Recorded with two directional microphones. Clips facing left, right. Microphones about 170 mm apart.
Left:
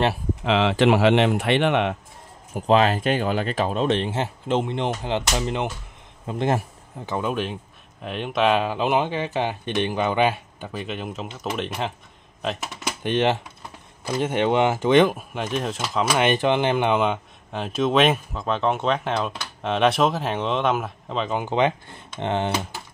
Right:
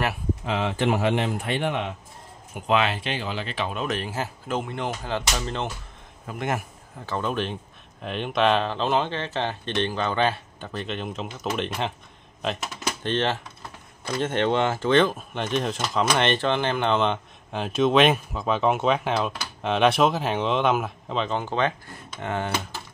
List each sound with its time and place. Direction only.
0.4 s speech: 85° left; by 2.0 s 70° left (ahead or behind)
2.5 s speech: 35° left (ahead or behind); by 5.7 s 20° left (ahead or behind)
6.2 s speech: 30° left (ahead or behind)
7.1 s speech: 10° left (ahead or behind)
13.0 s speech: 15° left (ahead or behind)
21.4 s speech: 15° left (ahead or behind)